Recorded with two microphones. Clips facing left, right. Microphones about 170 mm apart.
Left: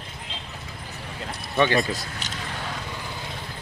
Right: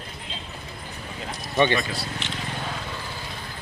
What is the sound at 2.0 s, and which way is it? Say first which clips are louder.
Vehicle: right 3 dB; 40° left (ahead or behind).